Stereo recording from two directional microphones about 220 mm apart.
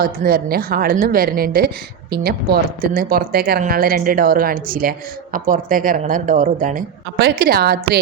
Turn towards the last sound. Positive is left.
turn(degrees=-45)  # may be behind; listen again after turning